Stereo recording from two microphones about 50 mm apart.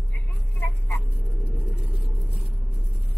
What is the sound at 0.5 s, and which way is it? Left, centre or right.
Vehicle, left.